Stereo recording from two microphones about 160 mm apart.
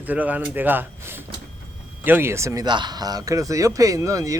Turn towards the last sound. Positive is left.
turn(degrees=-20)  # may be behind; listen again after turning